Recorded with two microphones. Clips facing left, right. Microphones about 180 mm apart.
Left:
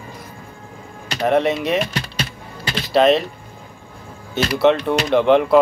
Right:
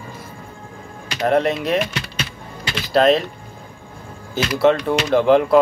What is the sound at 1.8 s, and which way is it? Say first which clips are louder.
Music: left 1 dB; 35° left (ahead or behind).